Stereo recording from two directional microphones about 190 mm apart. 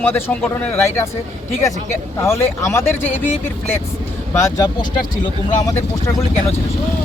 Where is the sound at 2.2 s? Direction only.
15° left (ahead or behind).